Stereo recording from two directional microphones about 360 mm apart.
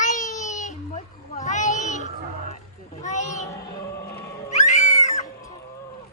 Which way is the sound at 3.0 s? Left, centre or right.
Centre.